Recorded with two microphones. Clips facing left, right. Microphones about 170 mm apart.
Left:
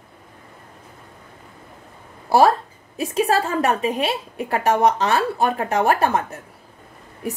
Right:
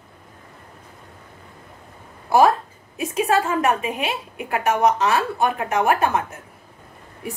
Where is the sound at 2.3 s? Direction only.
35° left (ahead or behind).